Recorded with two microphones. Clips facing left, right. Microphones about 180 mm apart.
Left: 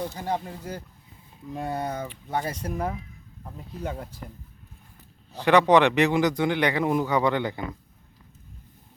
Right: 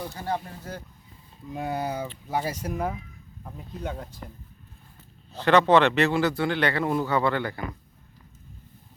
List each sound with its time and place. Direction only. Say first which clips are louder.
0.2 s a man's voice: left 1 dB; 15° left (ahead or behind)
1.5 s speech: right 1 dB; 5° right (ahead or behind)
5.3 s a man's voice: left 1 dB; 15° left (ahead or behind)